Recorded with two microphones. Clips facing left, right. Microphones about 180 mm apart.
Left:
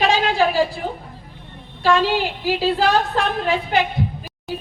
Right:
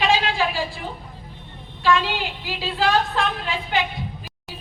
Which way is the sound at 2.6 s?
40° left (ahead or behind).